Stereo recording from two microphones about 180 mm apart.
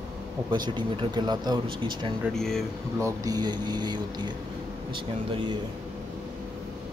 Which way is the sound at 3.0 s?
20° right (ahead or behind).